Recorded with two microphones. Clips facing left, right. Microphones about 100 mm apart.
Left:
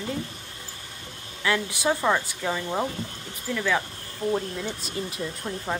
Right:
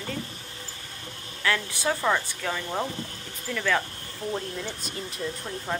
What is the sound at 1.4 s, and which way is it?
Speech, 15° left (ahead or behind).